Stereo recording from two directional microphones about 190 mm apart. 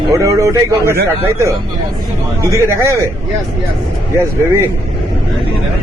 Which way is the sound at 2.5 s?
15° right (ahead or behind).